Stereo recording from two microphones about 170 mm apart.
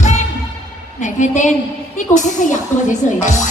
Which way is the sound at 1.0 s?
45° left (ahead or behind).